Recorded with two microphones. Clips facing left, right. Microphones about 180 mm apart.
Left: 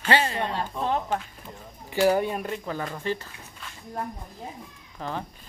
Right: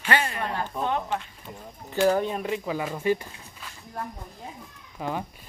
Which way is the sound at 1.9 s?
10° left (ahead or behind).